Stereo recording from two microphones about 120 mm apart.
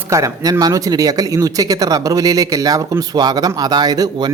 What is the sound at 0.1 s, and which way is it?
Speech, 25° right (ahead or behind).